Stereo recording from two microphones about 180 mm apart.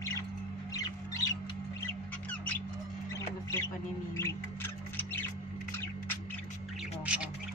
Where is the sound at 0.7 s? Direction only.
20° left (ahead or behind).